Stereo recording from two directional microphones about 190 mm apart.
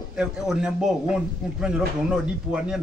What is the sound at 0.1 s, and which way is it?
A man's voice, 5° right (ahead or behind).